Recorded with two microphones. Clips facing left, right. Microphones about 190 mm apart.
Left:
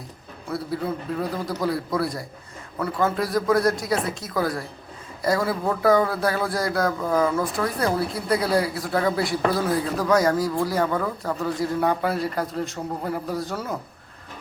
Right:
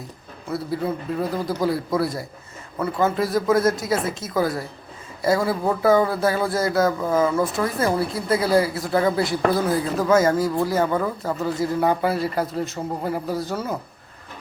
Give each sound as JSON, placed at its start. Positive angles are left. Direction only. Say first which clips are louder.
{"t": 0.7, "sound": "a woman's voice", "louder": "right 2 dB", "side_deg": 0}